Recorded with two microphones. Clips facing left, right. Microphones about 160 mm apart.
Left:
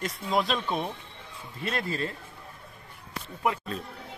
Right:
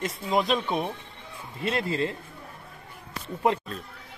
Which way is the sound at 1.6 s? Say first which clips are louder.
Right 4 dB; 25° right (ahead or behind).